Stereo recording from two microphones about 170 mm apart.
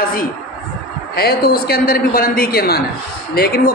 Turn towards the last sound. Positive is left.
turn(degrees=65)  # may be behind; listen again after turning